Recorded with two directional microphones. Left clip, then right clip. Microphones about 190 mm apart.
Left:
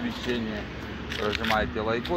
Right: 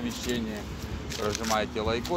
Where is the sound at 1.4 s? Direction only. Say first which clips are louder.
Left 2 dB; centre (ahead or behind).